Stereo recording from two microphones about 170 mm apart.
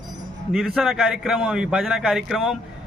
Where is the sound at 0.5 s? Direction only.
Centre (ahead or behind).